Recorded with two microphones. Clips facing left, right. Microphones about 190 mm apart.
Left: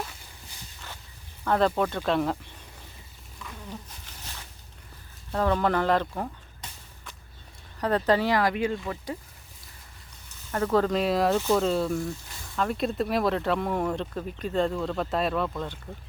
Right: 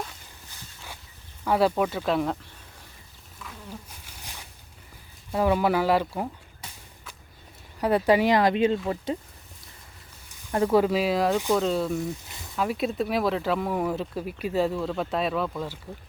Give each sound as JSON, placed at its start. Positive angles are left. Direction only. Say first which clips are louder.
{"t": 1.5, "sound": "speech", "louder": "right 1 dB", "side_deg": -10}
{"t": 3.3, "sound": "insect", "louder": "left 1 dB", "side_deg": -5}
{"t": 5.3, "sound": "a sound", "louder": "right 2 dB", "side_deg": -10}
{"t": 7.8, "sound": "speech", "louder": "right 3 dB", "side_deg": -10}
{"t": 10.5, "sound": "speech", "louder": "right 3 dB", "side_deg": -15}